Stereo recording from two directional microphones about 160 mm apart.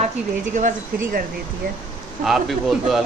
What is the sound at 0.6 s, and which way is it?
Speech, 50° right (ahead or behind).